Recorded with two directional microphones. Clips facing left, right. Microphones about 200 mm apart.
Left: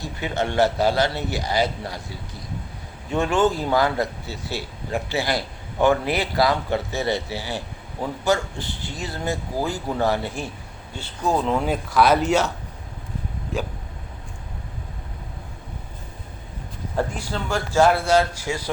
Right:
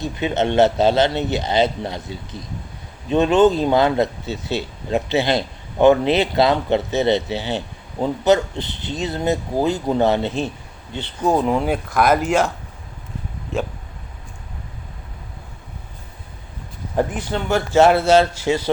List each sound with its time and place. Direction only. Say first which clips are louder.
0.0 s speech: right 5 dB; 20° right (ahead or behind)
17.2 s speech: right 5 dB; 25° right (ahead or behind)